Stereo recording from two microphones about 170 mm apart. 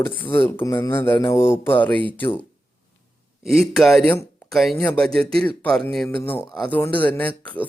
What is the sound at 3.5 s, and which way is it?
Speech, centre (ahead or behind).